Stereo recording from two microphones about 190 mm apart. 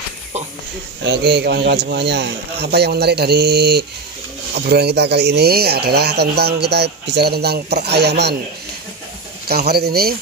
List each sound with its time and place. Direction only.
1.0 s speech: 60° right (ahead or behind)
9.5 s speech: 55° right (ahead or behind)